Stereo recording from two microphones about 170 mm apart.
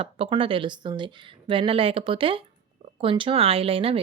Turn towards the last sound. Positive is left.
turn(degrees=-35)  # may be behind; listen again after turning